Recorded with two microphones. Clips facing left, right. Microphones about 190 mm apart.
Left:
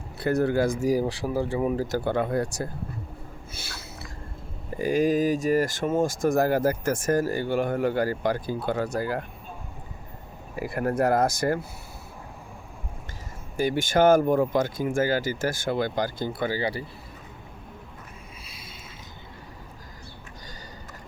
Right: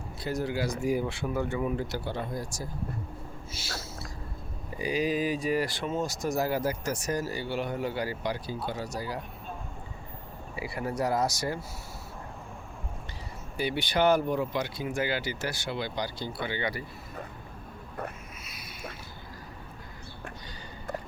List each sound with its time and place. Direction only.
0.2 s speech: 60° left (ahead or behind); by 2.0 s 40° left (ahead or behind)
2.0 s speech: 55° left (ahead or behind)
3.5 s a sound: 55° left (ahead or behind)
4.8 s speech: 50° left (ahead or behind)
10.5 s speech: 50° left (ahead or behind)
13.6 s speech: 45° left (ahead or behind)
16.6 s speech: 30° left (ahead or behind)
18.4 s boat: 25° left (ahead or behind)